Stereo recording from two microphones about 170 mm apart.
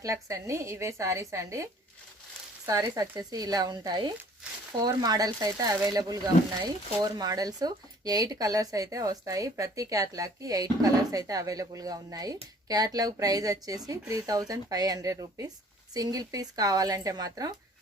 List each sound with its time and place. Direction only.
0.0 s a woman's voice: 20° right (ahead or behind)
2.6 s speech: 20° right (ahead or behind)